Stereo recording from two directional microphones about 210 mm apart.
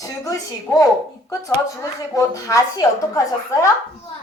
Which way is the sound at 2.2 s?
15° left (ahead or behind).